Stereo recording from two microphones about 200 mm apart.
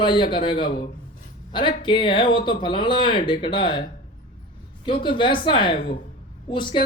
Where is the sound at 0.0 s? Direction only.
25° left (ahead or behind).